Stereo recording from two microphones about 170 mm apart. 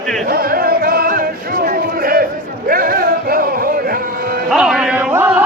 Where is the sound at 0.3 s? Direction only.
60° right (ahead or behind).